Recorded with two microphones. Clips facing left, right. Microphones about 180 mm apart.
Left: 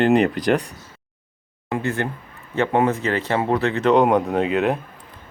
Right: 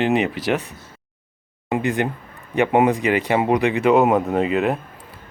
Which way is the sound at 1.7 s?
15° right (ahead or behind).